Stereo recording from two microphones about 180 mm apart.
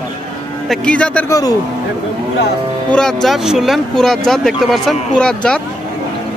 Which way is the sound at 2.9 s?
Centre (ahead or behind).